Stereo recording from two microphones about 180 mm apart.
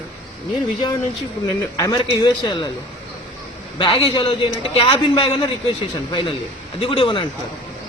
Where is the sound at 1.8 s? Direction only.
25° left (ahead or behind).